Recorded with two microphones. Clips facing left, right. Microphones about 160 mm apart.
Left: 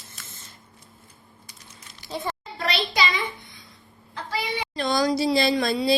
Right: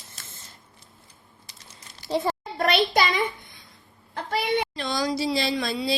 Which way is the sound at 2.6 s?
50° right (ahead or behind).